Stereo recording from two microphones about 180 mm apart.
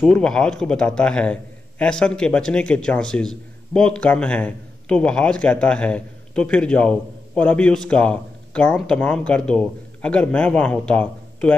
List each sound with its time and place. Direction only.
0.0 s a man's voice: 5° left (ahead or behind)